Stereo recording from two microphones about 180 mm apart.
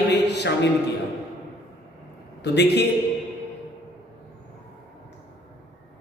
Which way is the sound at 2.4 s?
70° left (ahead or behind).